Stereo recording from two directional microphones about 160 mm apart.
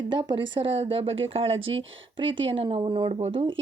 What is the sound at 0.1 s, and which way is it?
Speech, 30° right (ahead or behind).